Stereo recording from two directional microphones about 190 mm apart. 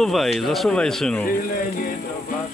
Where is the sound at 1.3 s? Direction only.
45° left (ahead or behind).